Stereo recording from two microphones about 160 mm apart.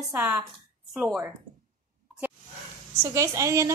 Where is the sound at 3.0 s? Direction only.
20° right (ahead or behind).